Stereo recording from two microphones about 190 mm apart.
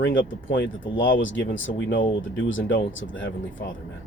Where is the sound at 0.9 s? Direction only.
80° left.